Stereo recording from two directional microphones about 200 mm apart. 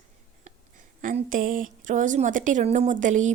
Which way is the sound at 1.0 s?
40° right (ahead or behind).